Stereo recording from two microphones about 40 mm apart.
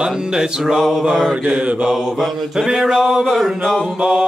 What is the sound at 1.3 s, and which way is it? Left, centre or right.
Mantra, right.